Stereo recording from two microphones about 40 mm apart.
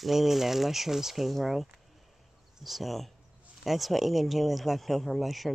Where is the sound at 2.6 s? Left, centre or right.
Centre.